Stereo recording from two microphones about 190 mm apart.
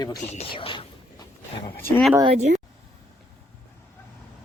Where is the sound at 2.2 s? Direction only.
35° right (ahead or behind).